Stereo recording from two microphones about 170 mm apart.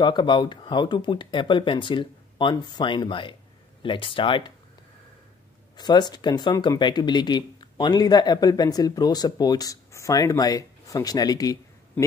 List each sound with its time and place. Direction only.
0.0 s speech: 25° left (ahead or behind)
5.8 s speech: 25° left (ahead or behind)